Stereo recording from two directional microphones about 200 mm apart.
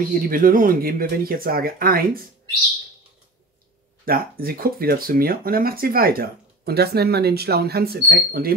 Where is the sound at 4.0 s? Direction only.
50° right (ahead or behind).